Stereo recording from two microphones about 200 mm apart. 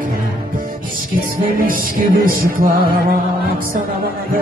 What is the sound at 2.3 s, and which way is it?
Music, 45° right (ahead or behind).